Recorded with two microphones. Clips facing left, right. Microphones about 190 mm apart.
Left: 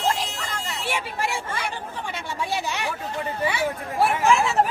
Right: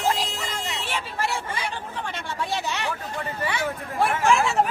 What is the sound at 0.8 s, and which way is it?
Vehicle, 10° left (ahead or behind).